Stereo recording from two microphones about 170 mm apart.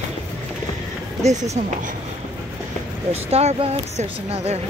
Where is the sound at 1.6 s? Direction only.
45° right (ahead or behind).